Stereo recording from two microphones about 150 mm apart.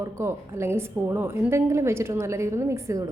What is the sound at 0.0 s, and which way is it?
A woman's voice, 20° right (ahead or behind).